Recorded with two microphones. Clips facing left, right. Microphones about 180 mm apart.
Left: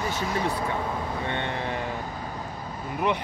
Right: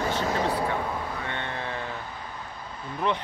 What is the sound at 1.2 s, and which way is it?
Vehicle, 20° left (ahead or behind).